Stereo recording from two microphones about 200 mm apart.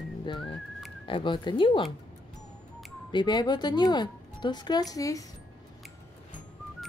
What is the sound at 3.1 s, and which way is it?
Speech, 20° left (ahead or behind).